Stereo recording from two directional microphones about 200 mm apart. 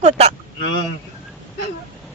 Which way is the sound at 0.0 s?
30° right (ahead or behind).